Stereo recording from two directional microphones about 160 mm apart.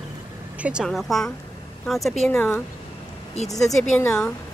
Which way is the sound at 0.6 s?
5° right (ahead or behind).